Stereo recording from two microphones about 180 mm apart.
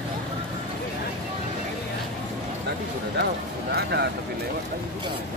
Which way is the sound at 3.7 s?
65° right (ahead or behind).